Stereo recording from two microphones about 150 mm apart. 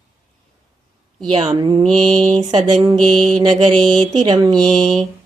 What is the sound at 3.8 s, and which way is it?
Mantra, 30° right (ahead or behind).